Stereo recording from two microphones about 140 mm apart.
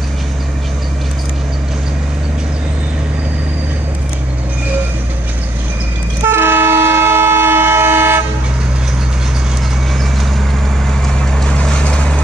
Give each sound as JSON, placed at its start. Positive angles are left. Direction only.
{"t": 6.2, "sound": "train", "side_deg": -15}
{"t": 11.1, "sound": "vehicle", "side_deg": 5}